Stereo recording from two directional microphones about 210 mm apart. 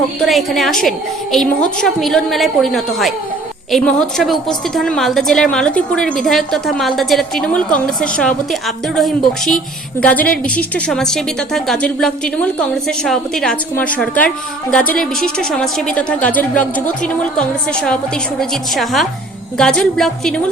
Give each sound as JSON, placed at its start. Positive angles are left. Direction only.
{"t": 0.2, "sound": "a woman's voice", "side_deg": 0}
{"t": 18.3, "sound": "a woman's voice", "side_deg": 0}